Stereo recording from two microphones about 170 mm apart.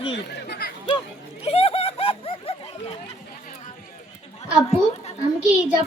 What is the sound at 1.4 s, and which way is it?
Speech, 35° left (ahead or behind).